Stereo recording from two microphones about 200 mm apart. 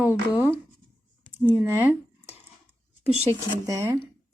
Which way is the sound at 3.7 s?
15° right (ahead or behind).